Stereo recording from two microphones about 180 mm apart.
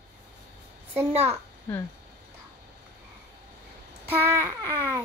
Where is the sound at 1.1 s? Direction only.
35° right (ahead or behind).